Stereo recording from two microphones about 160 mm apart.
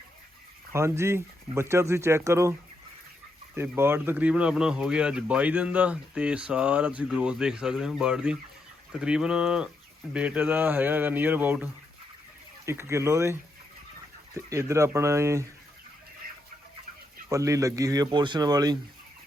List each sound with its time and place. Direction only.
0.7 s speech: 15° right (ahead or behind)
14.3 s speech: 20° right (ahead or behind)
17.2 s speech: 20° right (ahead or behind)